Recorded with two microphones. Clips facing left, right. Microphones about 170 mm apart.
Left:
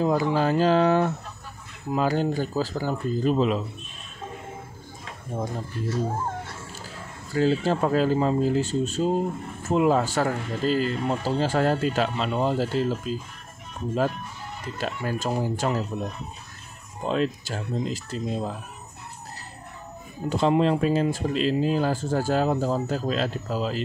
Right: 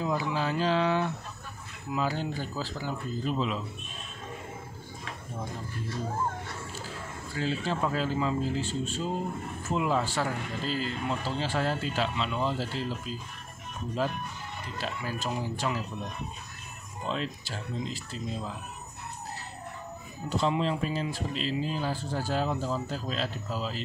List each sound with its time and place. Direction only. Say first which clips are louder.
0.0 s speech: left 7 dB; 45° left (ahead or behind)
7.3 s speech: left 9 dB; 40° left (ahead or behind)
14.8 s speech: left 6 dB; 45° left (ahead or behind)
20.2 s speech: left 7 dB; 50° left (ahead or behind)